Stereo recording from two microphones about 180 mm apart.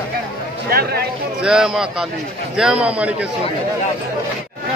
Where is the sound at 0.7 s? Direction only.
60° right (ahead or behind).